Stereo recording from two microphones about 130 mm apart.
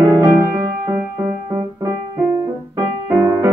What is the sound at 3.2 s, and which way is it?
Music, 25° right (ahead or behind).